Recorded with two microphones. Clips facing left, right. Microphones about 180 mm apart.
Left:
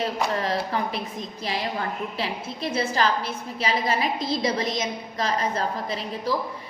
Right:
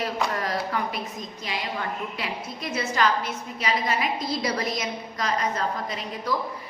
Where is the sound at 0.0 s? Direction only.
25° left (ahead or behind).